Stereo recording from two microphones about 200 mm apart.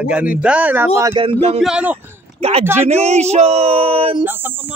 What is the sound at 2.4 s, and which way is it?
A man's voice, 30° right (ahead or behind).